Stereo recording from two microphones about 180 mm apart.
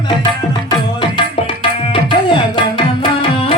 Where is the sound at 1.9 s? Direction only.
25° left (ahead or behind).